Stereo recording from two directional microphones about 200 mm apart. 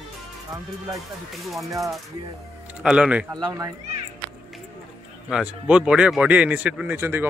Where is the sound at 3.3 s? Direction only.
15° right (ahead or behind).